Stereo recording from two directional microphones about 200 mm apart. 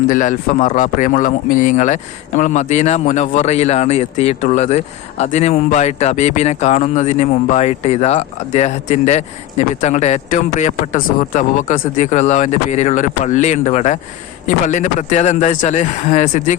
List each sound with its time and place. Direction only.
0.1 s speech: 40° left (ahead or behind)